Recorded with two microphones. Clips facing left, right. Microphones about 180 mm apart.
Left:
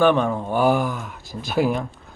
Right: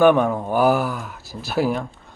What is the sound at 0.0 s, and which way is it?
A man's voice, 10° right (ahead or behind).